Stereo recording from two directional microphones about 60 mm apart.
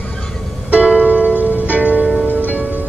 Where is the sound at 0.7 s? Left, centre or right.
Right.